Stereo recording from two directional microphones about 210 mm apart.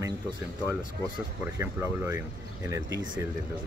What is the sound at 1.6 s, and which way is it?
Speech, 10° right (ahead or behind).